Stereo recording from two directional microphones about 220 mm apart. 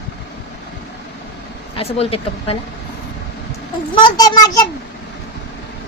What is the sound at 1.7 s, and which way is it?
Speech, 25° left (ahead or behind).